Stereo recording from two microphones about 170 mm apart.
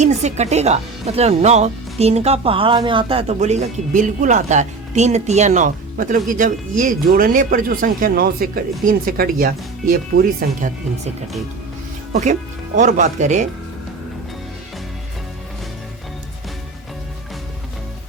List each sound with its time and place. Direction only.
0.0 s speech: 45° right (ahead or behind)
12.1 s speech: 45° right (ahead or behind)